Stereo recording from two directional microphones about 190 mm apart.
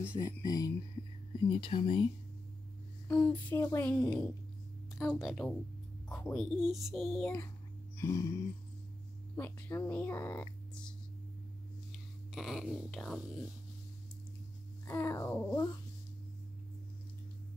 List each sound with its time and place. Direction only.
0.0 s speech: 15° left (ahead or behind)
3.1 s speech: 10° left (ahead or behind)
8.0 s speech: 15° left (ahead or behind)
9.4 s speech: 10° left (ahead or behind)
12.3 s speech: centre (ahead or behind)
14.9 s speech: 15° left (ahead or behind)